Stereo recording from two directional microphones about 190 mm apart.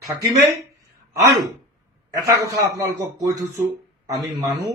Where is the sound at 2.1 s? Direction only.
20° right (ahead or behind).